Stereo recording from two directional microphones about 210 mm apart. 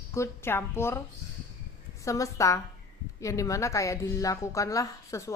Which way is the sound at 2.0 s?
15° left (ahead or behind).